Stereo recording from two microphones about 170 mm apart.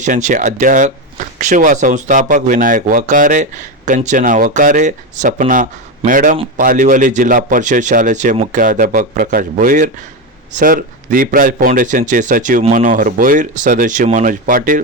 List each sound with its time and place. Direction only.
0.0 s speech: 45° right (ahead or behind)